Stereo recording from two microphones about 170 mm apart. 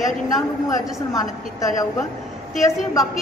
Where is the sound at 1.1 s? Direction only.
20° left (ahead or behind).